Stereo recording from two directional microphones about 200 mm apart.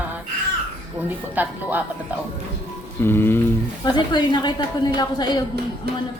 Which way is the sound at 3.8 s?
20° left (ahead or behind).